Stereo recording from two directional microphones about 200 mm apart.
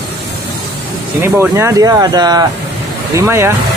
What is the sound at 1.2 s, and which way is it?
Speech, 10° right (ahead or behind).